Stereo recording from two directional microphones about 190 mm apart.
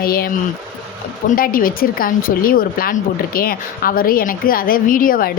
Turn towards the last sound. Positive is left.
turn(degrees=45)  # may be behind; listen again after turning